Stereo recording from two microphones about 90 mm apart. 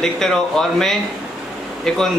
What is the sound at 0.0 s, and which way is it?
Speech, 5° left (ahead or behind).